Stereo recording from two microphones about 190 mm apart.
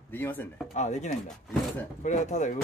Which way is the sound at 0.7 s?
40° left (ahead or behind).